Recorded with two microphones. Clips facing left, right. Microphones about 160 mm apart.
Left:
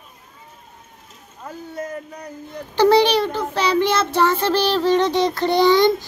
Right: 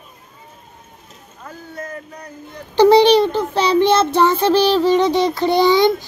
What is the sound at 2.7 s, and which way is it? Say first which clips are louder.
Child singing: right 4 dB; 20° right (ahead or behind).